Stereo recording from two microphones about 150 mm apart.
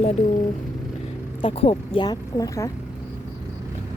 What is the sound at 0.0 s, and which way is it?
Speech, 50° left (ahead or behind).